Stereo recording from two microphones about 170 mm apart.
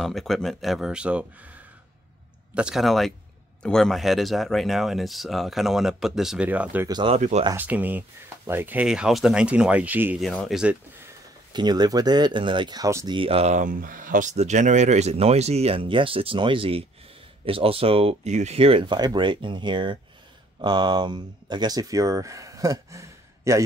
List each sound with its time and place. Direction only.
0.0 s speech: centre (ahead or behind)
6.9 s speech: 30° right (ahead or behind)
7.2 s speech: 45° right (ahead or behind)
7.5 s speech: 10° right (ahead or behind)
10.2 s speech: centre (ahead or behind)
11.5 s speech: 25° right (ahead or behind)